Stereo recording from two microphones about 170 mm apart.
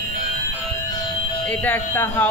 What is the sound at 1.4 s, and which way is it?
Speech, 10° left (ahead or behind).